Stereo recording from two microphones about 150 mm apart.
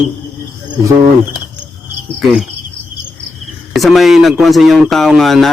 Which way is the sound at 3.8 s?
Centre (ahead or behind).